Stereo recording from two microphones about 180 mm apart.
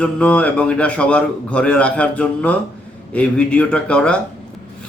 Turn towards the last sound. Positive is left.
turn(degrees=5)  # may be behind; listen again after turning